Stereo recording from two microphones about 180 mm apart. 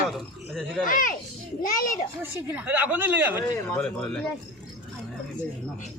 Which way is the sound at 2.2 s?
10° right (ahead or behind).